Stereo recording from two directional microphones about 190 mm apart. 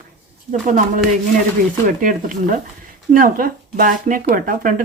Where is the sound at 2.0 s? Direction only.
45° right (ahead or behind).